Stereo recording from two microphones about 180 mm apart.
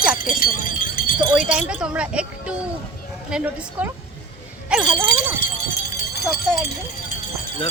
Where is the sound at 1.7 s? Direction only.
5° right (ahead or behind).